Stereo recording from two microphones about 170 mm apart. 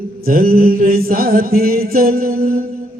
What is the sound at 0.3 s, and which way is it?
Mantra, 60° right (ahead or behind).